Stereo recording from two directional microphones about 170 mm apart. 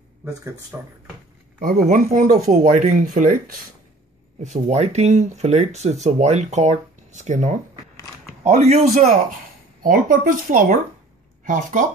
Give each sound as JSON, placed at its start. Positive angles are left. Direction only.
{"t": 0.2, "sound": "speech", "side_deg": -20}
{"t": 1.6, "sound": "speech", "side_deg": -55}
{"t": 2.0, "sound": "speech", "side_deg": -40}
{"t": 9.8, "sound": "speech", "side_deg": -50}